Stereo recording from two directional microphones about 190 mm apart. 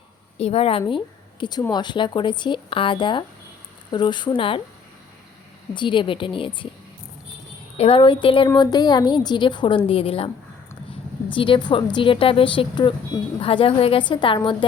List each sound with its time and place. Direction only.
0.3 s a woman's voice: 35° left (ahead or behind)
5.7 s a woman's voice: 25° left (ahead or behind)
7.8 s a woman's voice: 30° left (ahead or behind)